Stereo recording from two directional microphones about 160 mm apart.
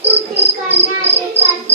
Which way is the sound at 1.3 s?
45° right (ahead or behind).